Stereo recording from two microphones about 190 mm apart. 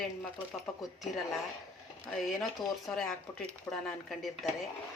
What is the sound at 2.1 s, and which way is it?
Speech, centre (ahead or behind).